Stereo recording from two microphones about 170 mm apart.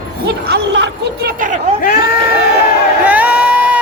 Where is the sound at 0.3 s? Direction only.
70° right (ahead or behind); by 1.7 s 50° right (ahead or behind).